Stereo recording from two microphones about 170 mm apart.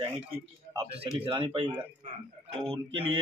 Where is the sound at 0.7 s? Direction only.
35° right (ahead or behind).